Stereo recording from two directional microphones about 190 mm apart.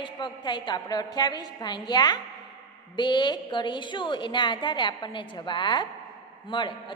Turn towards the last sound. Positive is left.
turn(degrees=25)  # may be behind; listen again after turning